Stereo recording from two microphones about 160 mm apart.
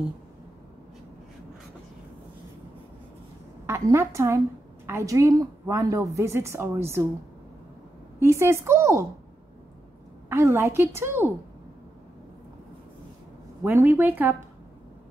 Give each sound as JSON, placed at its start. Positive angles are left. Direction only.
{"t": 3.6, "sound": "a woman's voice", "side_deg": -15}
{"t": 8.2, "sound": "a woman's voice", "side_deg": -15}
{"t": 10.3, "sound": "a woman's voice", "side_deg": -15}
{"t": 13.7, "sound": "a woman's voice", "side_deg": -15}